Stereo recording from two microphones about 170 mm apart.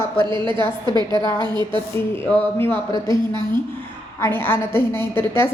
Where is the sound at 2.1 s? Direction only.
10° left (ahead or behind).